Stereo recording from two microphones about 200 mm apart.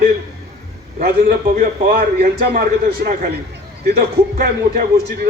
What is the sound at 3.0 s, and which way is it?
Speech, 40° right (ahead or behind).